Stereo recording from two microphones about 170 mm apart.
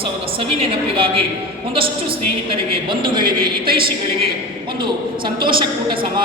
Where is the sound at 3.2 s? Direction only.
60° right (ahead or behind).